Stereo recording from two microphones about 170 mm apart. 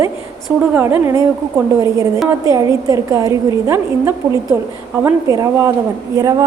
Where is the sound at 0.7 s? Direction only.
15° right (ahead or behind).